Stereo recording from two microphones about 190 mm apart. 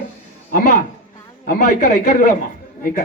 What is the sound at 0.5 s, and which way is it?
Speech, 50° left (ahead or behind).